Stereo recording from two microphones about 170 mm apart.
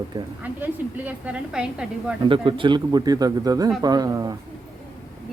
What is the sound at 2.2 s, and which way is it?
Speech, 30° right (ahead or behind).